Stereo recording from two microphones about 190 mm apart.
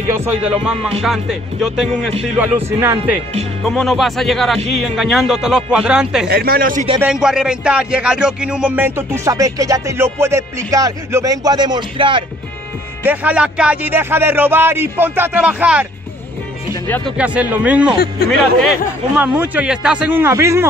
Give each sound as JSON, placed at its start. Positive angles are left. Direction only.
{"t": 0.1, "sound": "speech", "side_deg": -10}
{"t": 1.0, "sound": "speech", "side_deg": 0}
{"t": 6.2, "sound": "speech", "side_deg": -55}
{"t": 7.0, "sound": "speech", "side_deg": -5}
{"t": 13.0, "sound": "speech", "side_deg": -10}
{"t": 17.2, "sound": "speech", "side_deg": -5}
{"t": 19.1, "sound": "speech", "side_deg": -10}